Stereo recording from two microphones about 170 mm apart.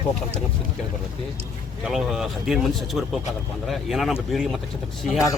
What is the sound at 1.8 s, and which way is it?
Speech, centre (ahead or behind).